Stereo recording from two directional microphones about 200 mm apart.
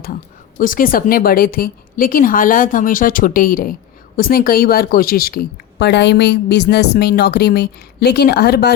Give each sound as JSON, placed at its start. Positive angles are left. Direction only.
{"t": 0.6, "sound": "a woman's voice", "side_deg": 45}